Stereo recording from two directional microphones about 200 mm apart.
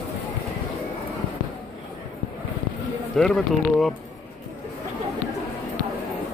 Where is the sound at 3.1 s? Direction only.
Centre (ahead or behind).